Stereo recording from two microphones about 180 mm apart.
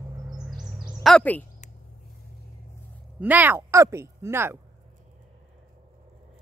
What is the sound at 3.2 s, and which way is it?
Speech, 10° right (ahead or behind).